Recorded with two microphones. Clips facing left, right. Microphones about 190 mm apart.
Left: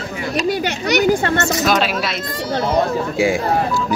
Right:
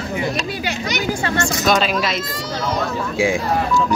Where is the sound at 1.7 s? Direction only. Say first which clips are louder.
Right 4 dB; 5° left (ahead or behind).